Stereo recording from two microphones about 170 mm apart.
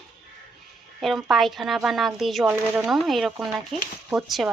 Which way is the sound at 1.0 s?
Centre (ahead or behind).